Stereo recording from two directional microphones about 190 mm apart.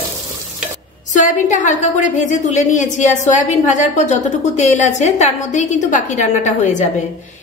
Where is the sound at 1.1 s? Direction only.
40° left (ahead or behind).